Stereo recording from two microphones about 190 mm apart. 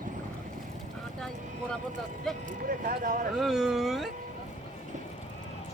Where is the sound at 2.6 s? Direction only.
45° right (ahead or behind).